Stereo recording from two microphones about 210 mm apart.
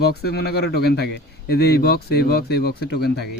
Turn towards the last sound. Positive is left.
turn(degrees=50)  # may be behind; listen again after turning